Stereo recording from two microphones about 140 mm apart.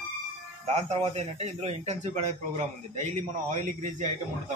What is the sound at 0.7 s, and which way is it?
A man's voice, 50° right (ahead or behind).